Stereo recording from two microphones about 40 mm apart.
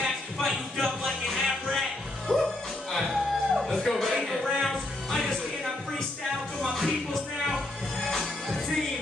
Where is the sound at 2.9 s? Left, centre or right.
Centre.